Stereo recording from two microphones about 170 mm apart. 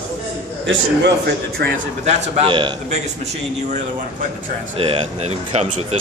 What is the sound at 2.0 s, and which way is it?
Speech, 30° right (ahead or behind).